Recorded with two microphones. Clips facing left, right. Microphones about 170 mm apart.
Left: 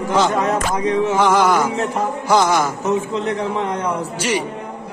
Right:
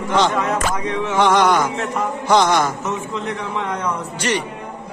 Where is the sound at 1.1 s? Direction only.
5° left (ahead or behind).